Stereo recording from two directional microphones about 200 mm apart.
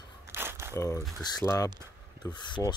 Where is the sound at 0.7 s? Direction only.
15° left (ahead or behind).